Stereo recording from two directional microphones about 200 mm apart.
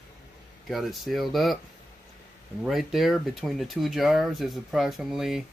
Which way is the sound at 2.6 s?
Centre (ahead or behind).